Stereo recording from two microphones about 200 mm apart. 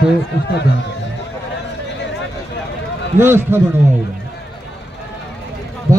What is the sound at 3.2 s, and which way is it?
Speech, 10° right (ahead or behind).